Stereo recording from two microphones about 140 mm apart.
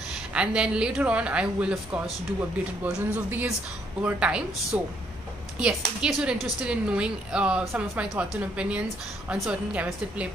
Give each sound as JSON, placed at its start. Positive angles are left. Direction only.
{"t": 0.3, "sound": "a woman's voice", "side_deg": -5}